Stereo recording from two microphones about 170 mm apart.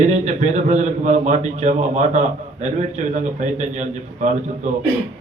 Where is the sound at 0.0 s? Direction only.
45° right (ahead or behind).